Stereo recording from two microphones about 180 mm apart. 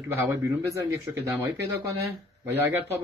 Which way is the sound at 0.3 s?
15° right (ahead or behind).